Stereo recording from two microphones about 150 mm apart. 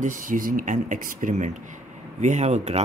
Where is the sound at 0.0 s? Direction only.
60° right (ahead or behind).